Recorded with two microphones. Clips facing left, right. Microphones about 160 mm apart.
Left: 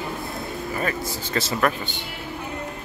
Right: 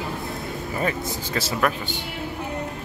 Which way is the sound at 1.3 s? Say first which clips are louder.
Left 1 dB; 10° right (ahead or behind).